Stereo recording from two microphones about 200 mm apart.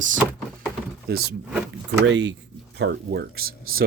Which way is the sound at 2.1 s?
60° right (ahead or behind).